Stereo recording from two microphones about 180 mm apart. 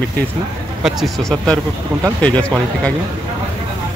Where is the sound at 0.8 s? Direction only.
Centre (ahead or behind).